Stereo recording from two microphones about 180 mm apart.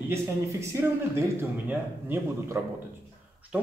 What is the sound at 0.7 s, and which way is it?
A man's voice, 15° right (ahead or behind).